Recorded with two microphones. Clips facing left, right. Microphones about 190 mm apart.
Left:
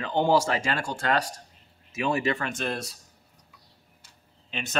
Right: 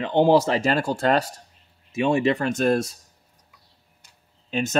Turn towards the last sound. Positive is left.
turn(degrees=-40)  # may be behind; listen again after turning